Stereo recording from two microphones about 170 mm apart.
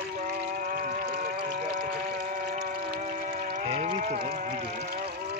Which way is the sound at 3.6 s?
40° right (ahead or behind).